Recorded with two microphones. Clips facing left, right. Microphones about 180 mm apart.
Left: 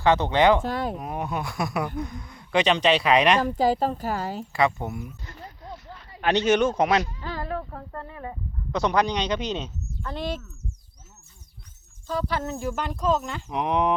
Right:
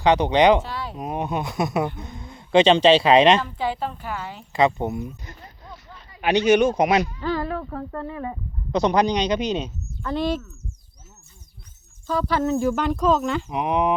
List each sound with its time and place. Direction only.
0.0 s speech: 15° right (ahead or behind)
0.6 s speech: 50° left (ahead or behind)
0.9 s speech: 20° right (ahead or behind)
3.4 s speech: 40° left (ahead or behind)
4.5 s speech: 20° right (ahead or behind)
6.1 s speech: 15° right (ahead or behind)
7.2 s speech: 90° right
8.7 s speech: 20° right (ahead or behind)
10.1 s speech: 90° right
12.1 s speech: 90° right
13.5 s speech: 5° right (ahead or behind)